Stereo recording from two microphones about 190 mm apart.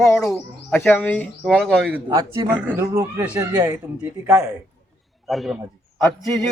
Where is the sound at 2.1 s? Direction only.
20° right (ahead or behind); by 5.6 s centre (ahead or behind).